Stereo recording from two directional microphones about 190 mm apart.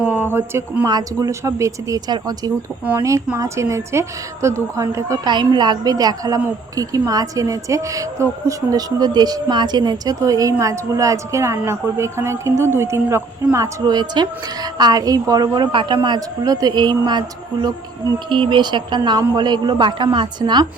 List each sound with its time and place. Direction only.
0.0 s a woman's voice: 10° right (ahead or behind)